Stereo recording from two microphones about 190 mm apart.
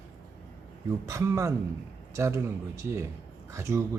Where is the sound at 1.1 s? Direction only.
15° right (ahead or behind).